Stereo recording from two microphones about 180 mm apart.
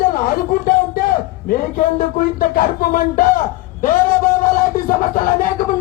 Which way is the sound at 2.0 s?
50° left (ahead or behind).